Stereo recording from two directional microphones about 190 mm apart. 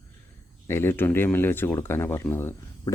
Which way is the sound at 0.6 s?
10° left (ahead or behind).